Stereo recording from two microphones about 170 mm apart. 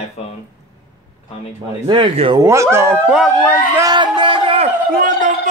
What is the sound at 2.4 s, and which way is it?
Speech, 15° right (ahead or behind).